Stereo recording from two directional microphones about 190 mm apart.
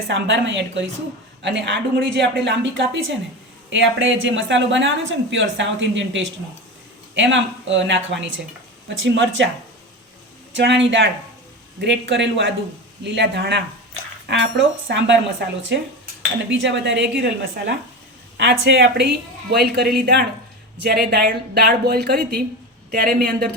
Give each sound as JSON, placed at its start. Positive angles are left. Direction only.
{"t": 0.1, "sound": "speech", "side_deg": -70}
{"t": 10.5, "sound": "a woman's voice", "side_deg": -70}
{"t": 14.8, "sound": "speech", "side_deg": -70}
{"t": 16.5, "sound": "a woman's voice", "side_deg": -70}